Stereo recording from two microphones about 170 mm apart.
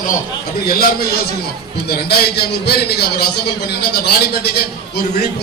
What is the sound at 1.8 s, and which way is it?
A man's voice, 65° left (ahead or behind).